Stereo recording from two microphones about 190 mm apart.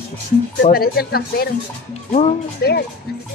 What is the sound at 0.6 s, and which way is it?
Speech, 50° left (ahead or behind).